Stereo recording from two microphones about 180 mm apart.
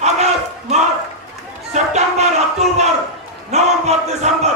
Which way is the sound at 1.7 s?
40° right (ahead or behind).